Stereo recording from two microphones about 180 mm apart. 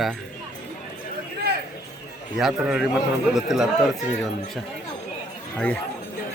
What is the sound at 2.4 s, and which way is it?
Speech, centre (ahead or behind).